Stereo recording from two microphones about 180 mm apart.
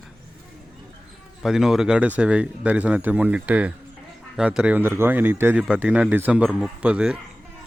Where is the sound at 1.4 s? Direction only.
5° right (ahead or behind).